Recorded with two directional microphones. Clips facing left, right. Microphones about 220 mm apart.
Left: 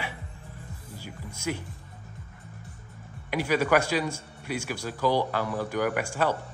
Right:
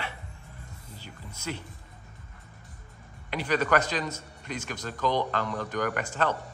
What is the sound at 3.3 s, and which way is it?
A man's voice, 10° left (ahead or behind).